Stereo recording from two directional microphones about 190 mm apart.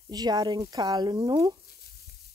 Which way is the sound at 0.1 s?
20° right (ahead or behind).